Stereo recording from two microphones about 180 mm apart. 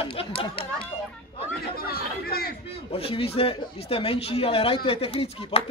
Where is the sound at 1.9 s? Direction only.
60° left (ahead or behind).